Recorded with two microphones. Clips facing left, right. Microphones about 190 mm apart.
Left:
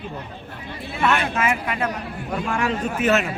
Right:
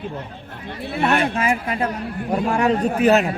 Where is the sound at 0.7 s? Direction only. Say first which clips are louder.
Right 6 dB; 60° right (ahead or behind).